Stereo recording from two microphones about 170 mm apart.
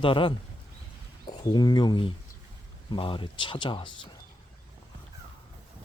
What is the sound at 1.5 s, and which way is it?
Speech, 25° left (ahead or behind).